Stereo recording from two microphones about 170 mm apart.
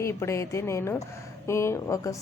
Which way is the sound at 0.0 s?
15° left (ahead or behind).